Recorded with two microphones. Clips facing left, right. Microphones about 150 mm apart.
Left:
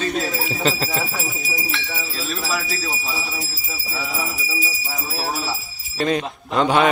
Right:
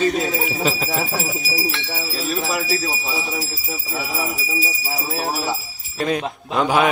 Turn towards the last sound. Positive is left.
turn(degrees=-5)  # may be behind; listen again after turning